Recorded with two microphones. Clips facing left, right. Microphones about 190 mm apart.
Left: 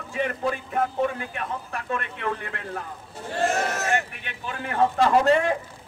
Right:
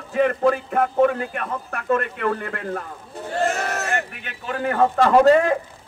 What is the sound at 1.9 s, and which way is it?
Speech, 45° right (ahead or behind).